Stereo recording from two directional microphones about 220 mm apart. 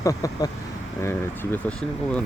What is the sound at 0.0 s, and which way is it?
Speech, 15° left (ahead or behind).